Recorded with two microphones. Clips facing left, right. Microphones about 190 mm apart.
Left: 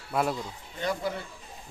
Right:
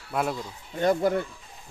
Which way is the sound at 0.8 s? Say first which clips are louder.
Right 8 dB; 50° right (ahead or behind).